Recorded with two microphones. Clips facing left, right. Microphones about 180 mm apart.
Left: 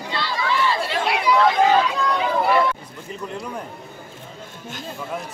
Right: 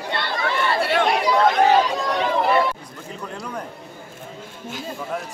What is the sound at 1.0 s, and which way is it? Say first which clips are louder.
Chatter: left 3 dB; 40° right (ahead or behind).